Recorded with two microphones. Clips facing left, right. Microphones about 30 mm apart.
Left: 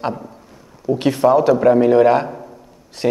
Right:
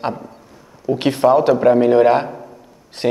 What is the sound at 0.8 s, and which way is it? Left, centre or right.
A man's voice, right.